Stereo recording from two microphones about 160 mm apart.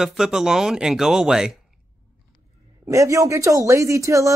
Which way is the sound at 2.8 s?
20° right (ahead or behind).